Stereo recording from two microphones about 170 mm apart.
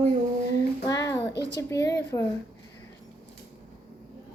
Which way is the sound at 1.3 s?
85° left.